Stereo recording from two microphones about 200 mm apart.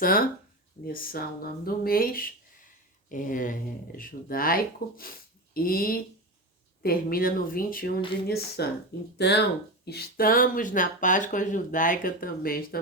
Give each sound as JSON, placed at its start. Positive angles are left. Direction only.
{"t": 0.0, "sound": "speech", "side_deg": 45}